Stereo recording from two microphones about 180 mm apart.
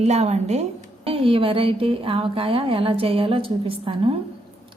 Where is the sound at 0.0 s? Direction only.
35° right (ahead or behind).